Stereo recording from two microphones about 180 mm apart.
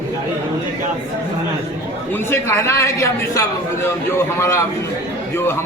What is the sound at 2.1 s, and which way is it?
A man's voice, 15° left (ahead or behind).